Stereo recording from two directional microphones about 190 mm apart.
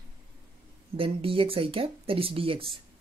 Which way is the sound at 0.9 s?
30° right (ahead or behind).